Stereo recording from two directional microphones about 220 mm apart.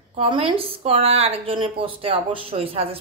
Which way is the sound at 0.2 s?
25° right (ahead or behind).